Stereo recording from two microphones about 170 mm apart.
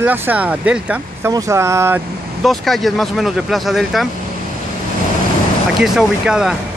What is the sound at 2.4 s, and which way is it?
Speech, centre (ahead or behind).